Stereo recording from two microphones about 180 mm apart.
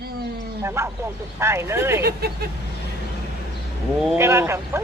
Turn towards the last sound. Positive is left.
turn(degrees=-15)  # may be behind; listen again after turning